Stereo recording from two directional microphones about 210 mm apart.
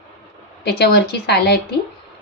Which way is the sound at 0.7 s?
50° left (ahead or behind).